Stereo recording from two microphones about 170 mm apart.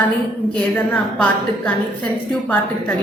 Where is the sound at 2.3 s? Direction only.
10° left (ahead or behind).